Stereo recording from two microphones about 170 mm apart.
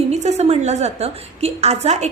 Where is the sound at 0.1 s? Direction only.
40° right (ahead or behind).